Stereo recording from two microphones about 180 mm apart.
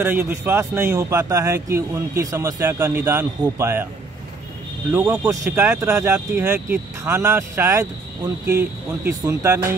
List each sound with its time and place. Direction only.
0.0 s speech: 10° right (ahead or behind)
4.9 s speech: 15° right (ahead or behind)